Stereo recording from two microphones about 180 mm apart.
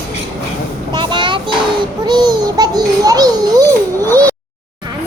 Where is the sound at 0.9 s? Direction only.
25° right (ahead or behind).